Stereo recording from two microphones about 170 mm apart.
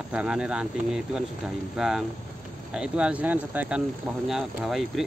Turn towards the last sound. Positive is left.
turn(degrees=0)  # may be behind; listen again after turning